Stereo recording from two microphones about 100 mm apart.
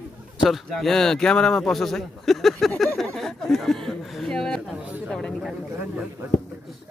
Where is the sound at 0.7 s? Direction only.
5° left (ahead or behind).